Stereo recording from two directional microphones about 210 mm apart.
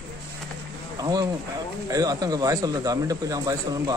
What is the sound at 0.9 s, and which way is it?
Speech, 20° right (ahead or behind).